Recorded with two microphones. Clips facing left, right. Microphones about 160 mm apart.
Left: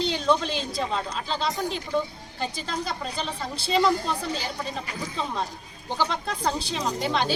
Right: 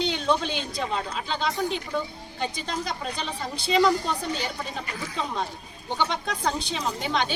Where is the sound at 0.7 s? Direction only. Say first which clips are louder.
Left 1 dB; centre (ahead or behind).